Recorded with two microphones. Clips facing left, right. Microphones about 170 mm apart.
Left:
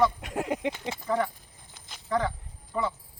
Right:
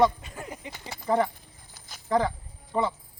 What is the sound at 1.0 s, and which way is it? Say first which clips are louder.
Speech: right 4 dB; 30° right (ahead or behind).